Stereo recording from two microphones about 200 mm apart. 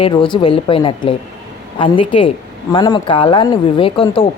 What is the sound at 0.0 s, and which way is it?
Speech, 25° left (ahead or behind).